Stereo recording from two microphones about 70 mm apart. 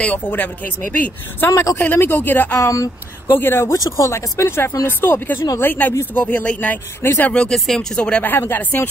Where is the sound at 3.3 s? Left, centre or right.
Left.